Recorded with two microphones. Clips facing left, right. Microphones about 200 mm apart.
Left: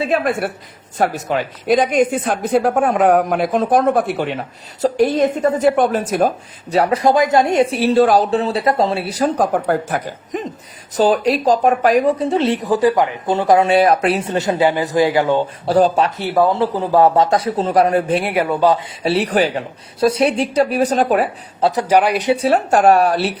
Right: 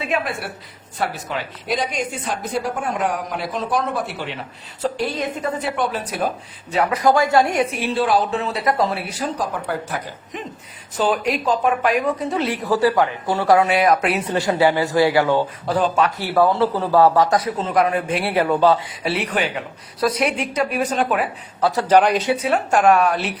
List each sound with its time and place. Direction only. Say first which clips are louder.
0.3 s a woman's voice: left 9 dB; 50° left (ahead or behind); by 9.1 s 25° left (ahead or behind)
9.1 s a woman's voice: left 8 dB; 50° left (ahead or behind); by 15.4 s 20° left (ahead or behind)
15.6 s a woman's voice: left 8 dB; 35° left (ahead or behind)
18.2 s a man's voice: left 1 dB; 15° left (ahead or behind)
19.0 s a woman's voice: left 7 dB; 35° left (ahead or behind)
21.8 s a man's voice: right 2 dB; 10° left (ahead or behind)
22.3 s a woman's voice: left 4 dB; 35° left (ahead or behind)